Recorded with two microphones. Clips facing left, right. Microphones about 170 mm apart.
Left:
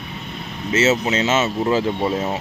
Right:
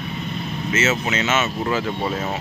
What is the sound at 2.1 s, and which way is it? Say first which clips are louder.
Speech: left 3 dB; 20° left (ahead or behind).